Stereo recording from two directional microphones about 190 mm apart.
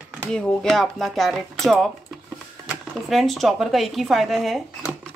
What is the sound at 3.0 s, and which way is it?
Speech, centre (ahead or behind).